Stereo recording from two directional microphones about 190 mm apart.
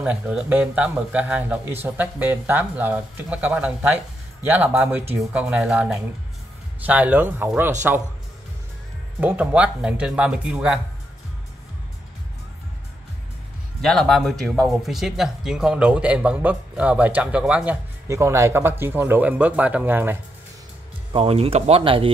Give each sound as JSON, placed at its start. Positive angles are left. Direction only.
{"t": 0.0, "sound": "speech", "side_deg": -5}
{"t": 9.2, "sound": "speech", "side_deg": -10}
{"t": 13.7, "sound": "speech", "side_deg": 0}
{"t": 21.1, "sound": "speech", "side_deg": -30}